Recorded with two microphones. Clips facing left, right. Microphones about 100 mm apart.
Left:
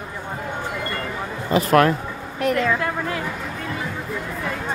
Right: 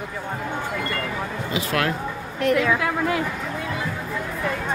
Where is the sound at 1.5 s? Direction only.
40° left (ahead or behind).